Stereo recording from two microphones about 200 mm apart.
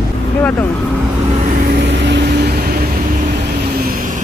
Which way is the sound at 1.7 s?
60° right (ahead or behind).